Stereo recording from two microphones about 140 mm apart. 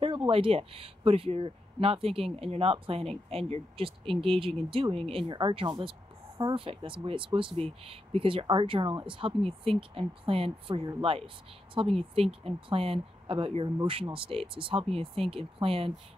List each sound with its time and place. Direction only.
0.3 s speech: 40° right (ahead or behind)